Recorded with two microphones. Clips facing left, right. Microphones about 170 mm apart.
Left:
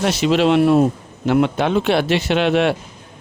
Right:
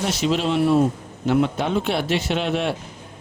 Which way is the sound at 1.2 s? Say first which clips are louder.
Left 3 dB; 75° left (ahead or behind).